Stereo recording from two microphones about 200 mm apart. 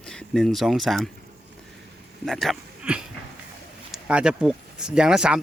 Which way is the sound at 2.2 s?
Centre (ahead or behind).